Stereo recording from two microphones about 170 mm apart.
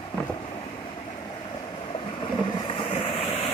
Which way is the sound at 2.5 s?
30° left (ahead or behind).